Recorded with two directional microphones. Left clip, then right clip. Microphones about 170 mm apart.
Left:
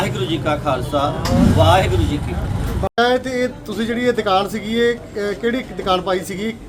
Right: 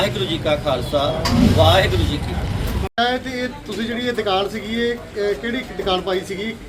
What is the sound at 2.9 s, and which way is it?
Speech, 60° left (ahead or behind).